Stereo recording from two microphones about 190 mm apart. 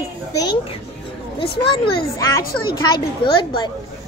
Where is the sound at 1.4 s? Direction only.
25° left (ahead or behind).